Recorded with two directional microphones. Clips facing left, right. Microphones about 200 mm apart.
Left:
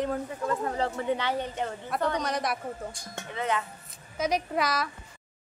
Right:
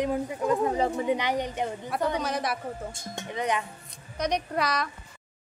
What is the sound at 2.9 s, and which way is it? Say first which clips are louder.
Speech: right 3 dB; 20° right (ahead or behind).